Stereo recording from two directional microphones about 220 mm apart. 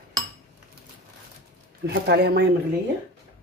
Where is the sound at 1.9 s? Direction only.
45° right (ahead or behind).